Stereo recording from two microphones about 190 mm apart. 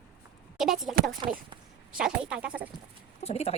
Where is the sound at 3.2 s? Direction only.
35° left (ahead or behind).